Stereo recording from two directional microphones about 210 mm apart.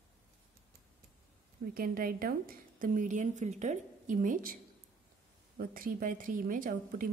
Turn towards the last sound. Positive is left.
turn(degrees=-40)  # may be behind; listen again after turning